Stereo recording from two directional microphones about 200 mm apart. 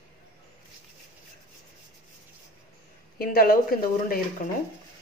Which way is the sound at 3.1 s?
45° left (ahead or behind).